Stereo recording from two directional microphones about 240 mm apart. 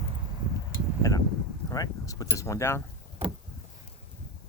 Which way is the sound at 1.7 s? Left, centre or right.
Centre.